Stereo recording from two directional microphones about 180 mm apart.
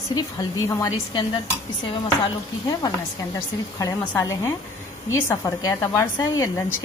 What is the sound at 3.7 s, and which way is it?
A woman's voice, 20° left (ahead or behind).